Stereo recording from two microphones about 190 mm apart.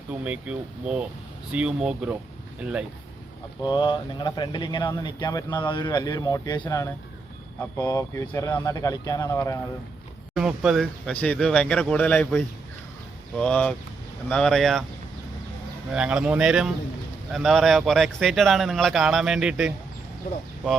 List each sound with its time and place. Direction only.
0.1 s speech: 5° right (ahead or behind)
3.6 s speech: 25° left (ahead or behind)
10.3 s speech: 5° right (ahead or behind)
15.9 s speech: 5° right (ahead or behind)